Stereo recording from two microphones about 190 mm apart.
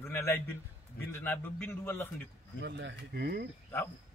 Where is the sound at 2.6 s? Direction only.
70° right (ahead or behind).